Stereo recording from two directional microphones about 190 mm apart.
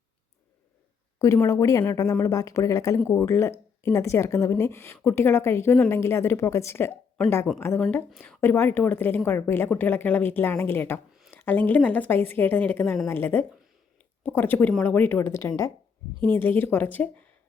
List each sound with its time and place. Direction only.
1.2 s a woman's voice: 15° left (ahead or behind)
11.1 s a sound: centre (ahead or behind)
11.3 s a woman's voice: 10° left (ahead or behind)